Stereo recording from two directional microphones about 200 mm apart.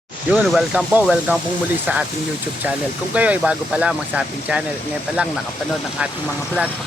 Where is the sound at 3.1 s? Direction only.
5° right (ahead or behind).